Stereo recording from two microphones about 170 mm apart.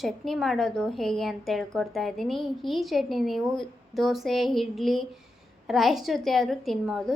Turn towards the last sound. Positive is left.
turn(degrees=0)  # may be behind; listen again after turning